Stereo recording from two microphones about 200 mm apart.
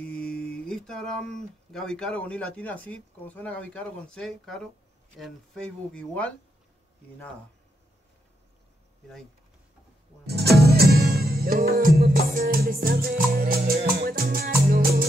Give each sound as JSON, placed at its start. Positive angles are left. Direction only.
{"t": 0.0, "sound": "speech", "side_deg": 5}
{"t": 10.2, "sound": "music", "side_deg": -55}